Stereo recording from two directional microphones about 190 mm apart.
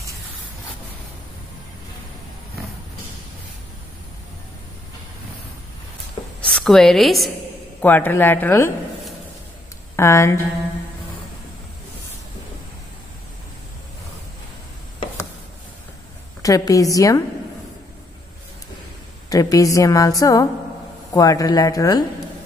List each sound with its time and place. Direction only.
6.4 s a woman's voice: 5° left (ahead or behind)
9.9 s a woman's voice: 15° left (ahead or behind)
16.4 s a woman's voice: 15° left (ahead or behind)
19.2 s a woman's voice: 20° left (ahead or behind)